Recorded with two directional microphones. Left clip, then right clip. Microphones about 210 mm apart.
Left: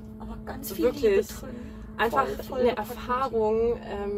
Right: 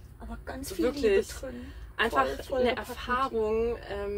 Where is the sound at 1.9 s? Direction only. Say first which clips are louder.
Left 2 dB; 20° right (ahead or behind).